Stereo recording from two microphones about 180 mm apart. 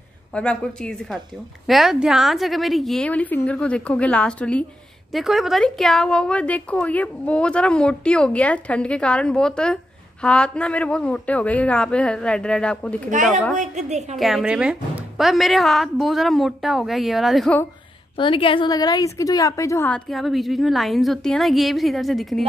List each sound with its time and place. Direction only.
0.3 s a woman's voice: 5° left (ahead or behind)
13.6 s a woman's voice: 40° right (ahead or behind)
14.1 s a woman's voice: centre (ahead or behind)
18.1 s a woman's voice: 30° left (ahead or behind)
20.1 s a woman's voice: centre (ahead or behind)